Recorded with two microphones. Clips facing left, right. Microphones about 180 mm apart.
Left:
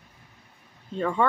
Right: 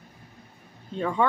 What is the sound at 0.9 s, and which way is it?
Speech, centre (ahead or behind).